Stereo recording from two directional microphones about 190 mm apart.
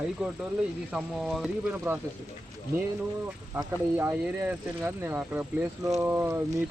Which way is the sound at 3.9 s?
10° right (ahead or behind).